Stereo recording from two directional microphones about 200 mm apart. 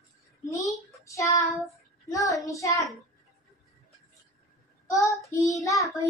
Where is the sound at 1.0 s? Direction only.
15° left (ahead or behind).